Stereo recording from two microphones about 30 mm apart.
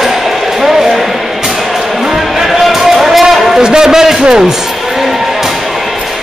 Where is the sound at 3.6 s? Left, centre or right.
Right.